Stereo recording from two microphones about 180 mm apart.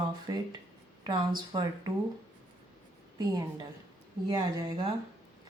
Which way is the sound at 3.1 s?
20° right (ahead or behind).